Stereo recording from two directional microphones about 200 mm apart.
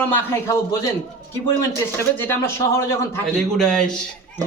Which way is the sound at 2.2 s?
10° left (ahead or behind).